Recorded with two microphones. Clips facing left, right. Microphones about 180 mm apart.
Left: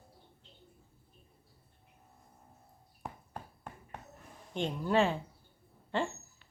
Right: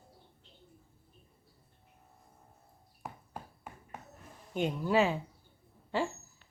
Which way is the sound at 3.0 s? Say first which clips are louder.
Even; 5° right (ahead or behind).